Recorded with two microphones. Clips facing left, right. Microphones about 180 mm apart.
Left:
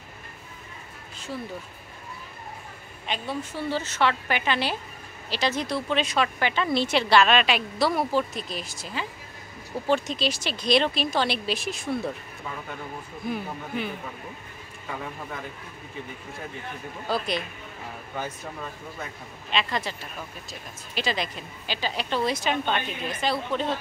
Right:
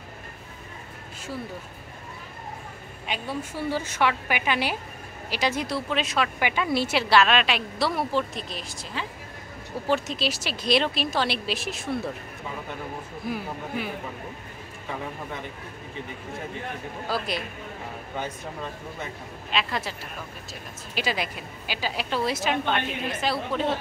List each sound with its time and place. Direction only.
3.1 s a woman's voice: 10° right (ahead or behind)
13.3 s a woman's voice: 5° right (ahead or behind)
17.1 s a woman's voice: 5° right (ahead or behind)
18.1 s a woman's voice: 20° right (ahead or behind)
19.5 s a woman's voice: 5° right (ahead or behind)